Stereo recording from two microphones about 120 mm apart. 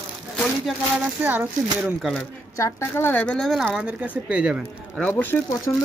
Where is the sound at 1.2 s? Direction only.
15° right (ahead or behind).